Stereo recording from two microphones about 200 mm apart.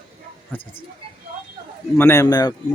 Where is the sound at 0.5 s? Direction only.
10° left (ahead or behind).